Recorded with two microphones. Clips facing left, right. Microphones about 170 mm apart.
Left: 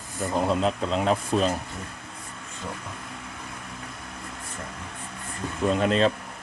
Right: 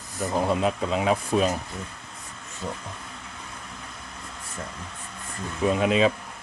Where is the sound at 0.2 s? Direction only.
Centre (ahead or behind).